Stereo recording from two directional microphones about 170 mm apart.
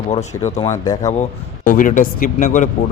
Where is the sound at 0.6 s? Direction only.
20° left (ahead or behind).